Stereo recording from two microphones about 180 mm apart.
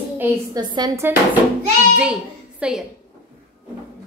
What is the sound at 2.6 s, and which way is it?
Speech, 5° right (ahead or behind).